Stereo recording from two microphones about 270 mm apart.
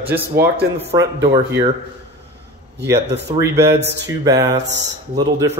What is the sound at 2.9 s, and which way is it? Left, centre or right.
Speech, right.